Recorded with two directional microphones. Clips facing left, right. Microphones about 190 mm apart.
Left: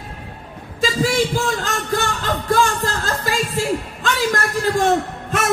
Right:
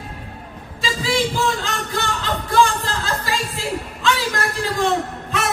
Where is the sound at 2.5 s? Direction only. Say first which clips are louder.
Right 1 dB; 45° left (ahead or behind).